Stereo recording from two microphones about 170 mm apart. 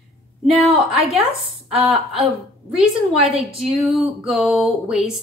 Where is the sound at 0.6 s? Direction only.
35° right (ahead or behind).